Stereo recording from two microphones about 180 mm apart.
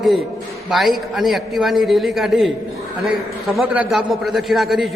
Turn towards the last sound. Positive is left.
turn(degrees=0)  # may be behind; listen again after turning